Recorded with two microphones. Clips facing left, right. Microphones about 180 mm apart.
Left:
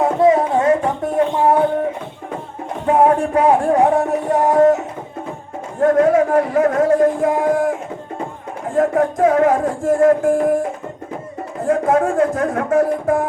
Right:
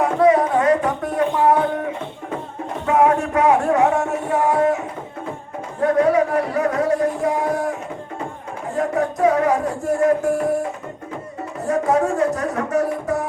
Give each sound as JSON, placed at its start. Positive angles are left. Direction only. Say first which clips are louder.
{"t": 0.0, "sound": "a sound", "louder": "left 1 dB", "side_deg": 25}
{"t": 2.8, "sound": "music", "louder": "left 3 dB", "side_deg": 30}
{"t": 5.8, "sound": "speech", "louder": "left 3 dB", "side_deg": 50}
{"t": 11.7, "sound": "speech", "louder": "left 3 dB", "side_deg": 55}